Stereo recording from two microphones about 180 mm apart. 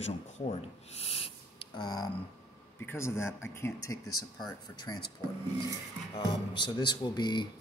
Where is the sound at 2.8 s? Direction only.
15° left (ahead or behind).